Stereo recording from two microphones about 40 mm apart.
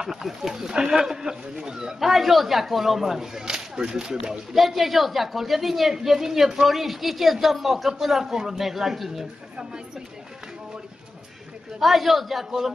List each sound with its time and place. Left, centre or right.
0.0 s speech: centre
2.0 s speech: centre
4.6 s a woman's voice: centre
9.6 s a woman's voice: right
11.8 s a woman's voice: centre